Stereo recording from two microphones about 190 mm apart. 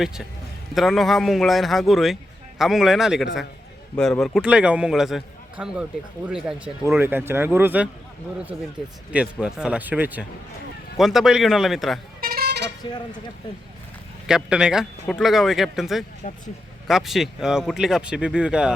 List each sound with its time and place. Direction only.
0.0 s a man's voice: centre (ahead or behind)
9.1 s a man's voice: 5° right (ahead or behind)
12.2 s vehicle: 55° right (ahead or behind)
14.3 s a man's voice: 5° right (ahead or behind)